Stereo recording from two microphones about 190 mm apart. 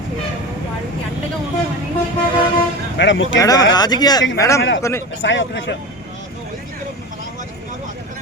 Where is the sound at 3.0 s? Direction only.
70° left (ahead or behind).